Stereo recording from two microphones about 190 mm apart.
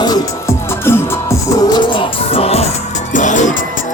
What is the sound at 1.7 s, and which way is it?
Music, 30° left (ahead or behind).